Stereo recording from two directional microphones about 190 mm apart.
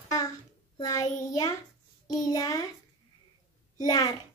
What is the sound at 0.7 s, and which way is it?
Child singing, 20° left (ahead or behind).